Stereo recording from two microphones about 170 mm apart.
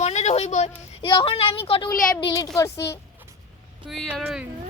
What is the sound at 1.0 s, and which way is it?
A woman's voice, 30° left (ahead or behind).